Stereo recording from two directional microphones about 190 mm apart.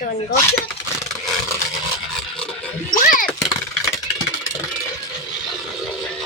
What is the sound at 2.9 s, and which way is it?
Speech, 45° left (ahead or behind).